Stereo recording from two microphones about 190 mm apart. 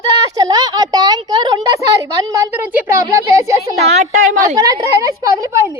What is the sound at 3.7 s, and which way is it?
Speech, 35° right (ahead or behind).